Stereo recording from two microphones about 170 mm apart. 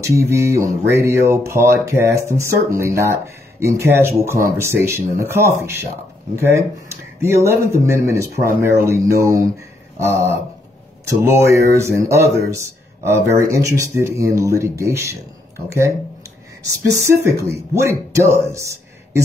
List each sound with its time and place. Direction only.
0.0 s speech: 15° right (ahead or behind)
16.6 s speech: 20° right (ahead or behind)